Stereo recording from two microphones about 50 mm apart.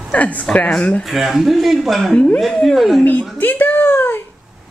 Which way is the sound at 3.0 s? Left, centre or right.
Left.